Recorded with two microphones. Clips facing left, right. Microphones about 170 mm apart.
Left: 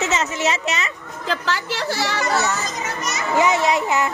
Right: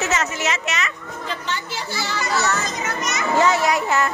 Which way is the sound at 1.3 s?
90° left.